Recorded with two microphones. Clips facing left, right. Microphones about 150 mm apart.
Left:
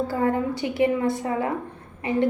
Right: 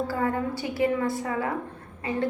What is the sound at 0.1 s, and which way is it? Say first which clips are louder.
A woman's voice: left 4 dB; 20° left (ahead or behind).